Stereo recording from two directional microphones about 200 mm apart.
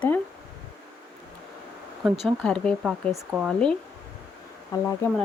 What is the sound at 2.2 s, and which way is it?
Speech, 5° left (ahead or behind).